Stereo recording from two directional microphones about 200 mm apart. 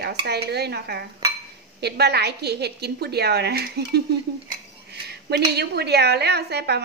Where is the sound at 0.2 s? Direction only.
55° right (ahead or behind).